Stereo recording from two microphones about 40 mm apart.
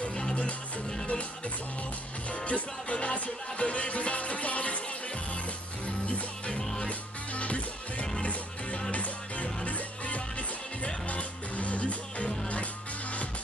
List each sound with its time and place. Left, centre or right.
0.0 s music: centre
2.4 s music: left
6.0 s music: left